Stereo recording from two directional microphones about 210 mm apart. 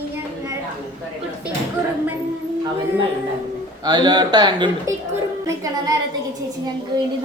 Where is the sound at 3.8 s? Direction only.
20° right (ahead or behind).